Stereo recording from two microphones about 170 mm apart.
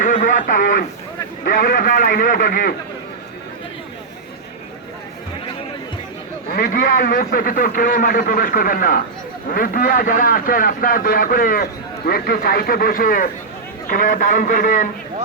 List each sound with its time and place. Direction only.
0.0 s radio: 50° left (ahead or behind)
1.5 s a man's voice: 55° left (ahead or behind)
6.5 s a man's voice: 55° left (ahead or behind)